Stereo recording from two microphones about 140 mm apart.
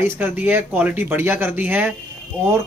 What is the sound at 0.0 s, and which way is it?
Speech, 15° right (ahead or behind).